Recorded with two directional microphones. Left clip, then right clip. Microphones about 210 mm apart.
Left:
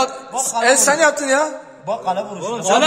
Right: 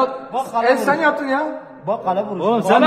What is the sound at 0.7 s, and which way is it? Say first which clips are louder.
Speech: left 3 dB; 50° left (ahead or behind).